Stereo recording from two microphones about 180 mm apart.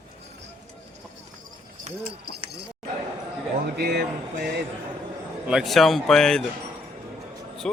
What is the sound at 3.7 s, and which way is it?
Speech, 60° right (ahead or behind).